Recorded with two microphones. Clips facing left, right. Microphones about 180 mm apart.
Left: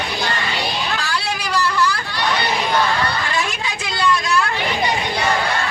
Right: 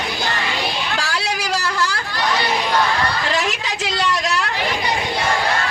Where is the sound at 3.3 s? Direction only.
75° right (ahead or behind).